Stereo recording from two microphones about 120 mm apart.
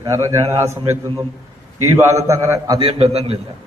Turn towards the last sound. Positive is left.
turn(degrees=-55)  # may be behind; listen again after turning